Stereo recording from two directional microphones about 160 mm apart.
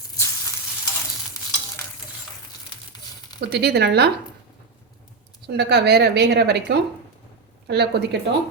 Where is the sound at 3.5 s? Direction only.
90° right.